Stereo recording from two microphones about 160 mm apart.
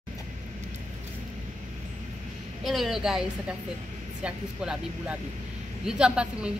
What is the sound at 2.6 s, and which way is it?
Speech, centre (ahead or behind).